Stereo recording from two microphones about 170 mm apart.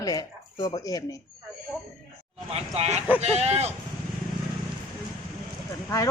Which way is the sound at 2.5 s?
40° right (ahead or behind).